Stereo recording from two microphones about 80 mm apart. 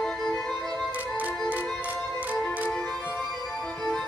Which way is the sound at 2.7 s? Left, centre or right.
Centre.